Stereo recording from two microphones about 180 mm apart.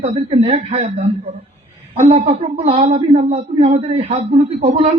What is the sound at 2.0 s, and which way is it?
Speech, 50° right (ahead or behind).